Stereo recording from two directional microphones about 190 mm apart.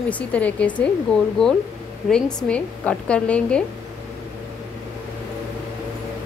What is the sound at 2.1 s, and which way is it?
A woman's voice, 5° left (ahead or behind).